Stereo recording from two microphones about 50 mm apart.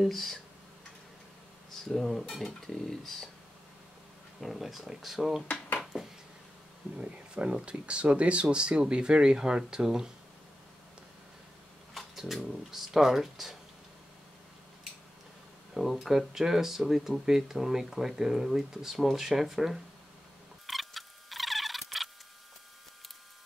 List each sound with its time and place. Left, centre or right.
0.0 s speech: centre
1.9 s speech: centre
4.4 s speech: centre
5.9 s a sound: centre
7.0 s speech: right
11.9 s a sound: centre
12.4 s speech: centre
15.7 s speech: centre
20.6 s a sound: centre